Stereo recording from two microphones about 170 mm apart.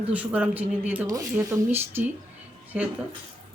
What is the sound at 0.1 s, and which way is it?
Speech, 10° right (ahead or behind).